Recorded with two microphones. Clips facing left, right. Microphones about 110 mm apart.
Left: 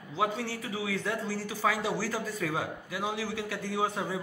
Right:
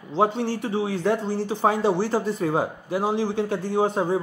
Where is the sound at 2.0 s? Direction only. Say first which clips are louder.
Right 10 dB; 60° right (ahead or behind).